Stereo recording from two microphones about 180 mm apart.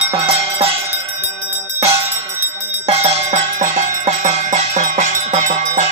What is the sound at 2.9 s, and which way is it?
Cowbell, 35° right (ahead or behind).